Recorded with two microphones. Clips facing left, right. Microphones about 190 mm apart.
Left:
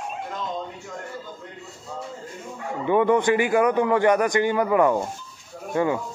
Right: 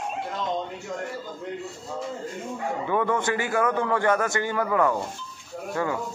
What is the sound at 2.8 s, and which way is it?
A man's voice, 20° left (ahead or behind).